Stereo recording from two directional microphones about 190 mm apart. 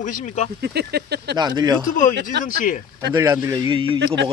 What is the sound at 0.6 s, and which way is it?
Speech, 60° right (ahead or behind).